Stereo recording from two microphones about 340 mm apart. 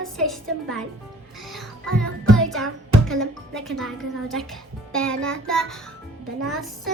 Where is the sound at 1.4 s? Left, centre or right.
Centre.